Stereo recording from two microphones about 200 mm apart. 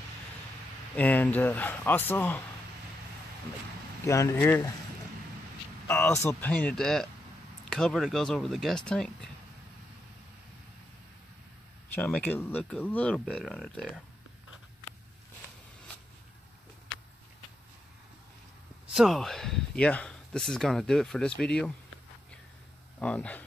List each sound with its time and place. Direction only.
0.9 s speech: 10° left (ahead or behind)
4.0 s speech: 15° left (ahead or behind)
5.9 s speech: 10° left (ahead or behind)
11.9 s speech: 10° left (ahead or behind)
18.9 s speech: centre (ahead or behind)
22.9 s speech: 5° left (ahead or behind)